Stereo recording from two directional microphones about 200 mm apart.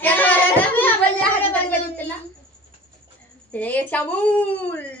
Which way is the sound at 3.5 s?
10° left (ahead or behind).